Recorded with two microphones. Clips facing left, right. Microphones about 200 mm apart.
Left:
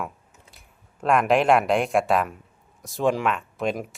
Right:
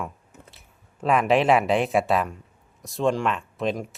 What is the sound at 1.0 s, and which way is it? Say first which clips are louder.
Speech: even; centre (ahead or behind).